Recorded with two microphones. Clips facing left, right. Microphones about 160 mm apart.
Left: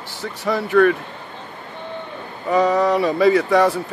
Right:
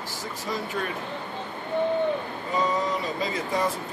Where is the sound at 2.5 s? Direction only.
70° left (ahead or behind).